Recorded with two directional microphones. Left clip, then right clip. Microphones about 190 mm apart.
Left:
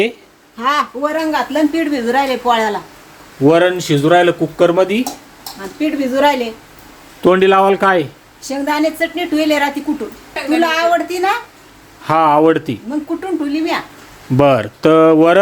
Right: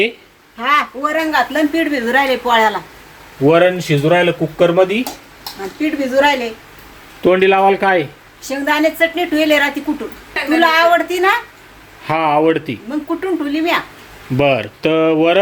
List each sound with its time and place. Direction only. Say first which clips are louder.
0.6 s a man's voice: right 1 dB; 45° left (ahead or behind)
1.0 s speech: right 1 dB; 20° left (ahead or behind)
5.8 s speech: even; 25° left (ahead or behind)
7.2 s speech: left 1 dB; 10° left (ahead or behind)